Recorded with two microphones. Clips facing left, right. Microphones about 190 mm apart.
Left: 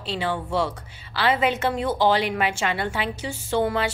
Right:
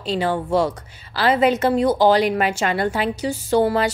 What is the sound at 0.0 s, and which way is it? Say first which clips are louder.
A woman's voice: right 5 dB; 40° right (ahead or behind).